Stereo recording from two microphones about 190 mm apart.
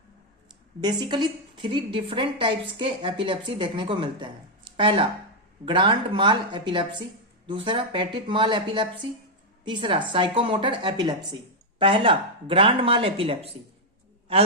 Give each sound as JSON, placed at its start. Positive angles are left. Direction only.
{"t": 0.8, "sound": "a woman's voice", "side_deg": -20}